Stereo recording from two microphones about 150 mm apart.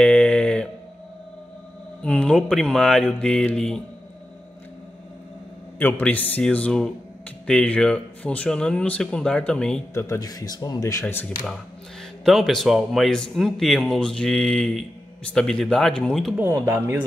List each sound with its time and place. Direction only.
0.0 s a sound: 5° left (ahead or behind)
2.0 s speech: 5° left (ahead or behind)
5.8 s speech: 15° left (ahead or behind)
9.9 s speech: 20° left (ahead or behind)
12.3 s speech: centre (ahead or behind)
16.3 s speech: 15° right (ahead or behind)